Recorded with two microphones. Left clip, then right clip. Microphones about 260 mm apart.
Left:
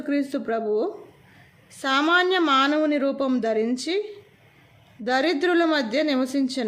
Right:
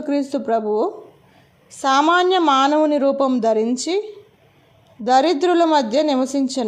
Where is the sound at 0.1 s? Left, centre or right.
Centre.